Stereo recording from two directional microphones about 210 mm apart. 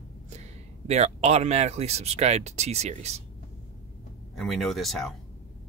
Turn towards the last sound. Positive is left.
turn(degrees=0)  # may be behind; listen again after turning